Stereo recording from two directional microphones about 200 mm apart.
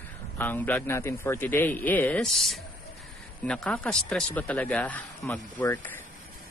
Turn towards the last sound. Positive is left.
turn(degrees=10)  # may be behind; listen again after turning